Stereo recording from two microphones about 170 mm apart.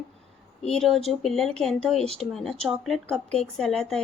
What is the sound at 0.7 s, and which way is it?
A woman's voice, centre (ahead or behind).